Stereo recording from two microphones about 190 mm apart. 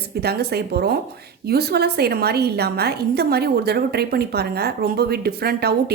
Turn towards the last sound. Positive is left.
turn(degrees=-55)  # may be behind; listen again after turning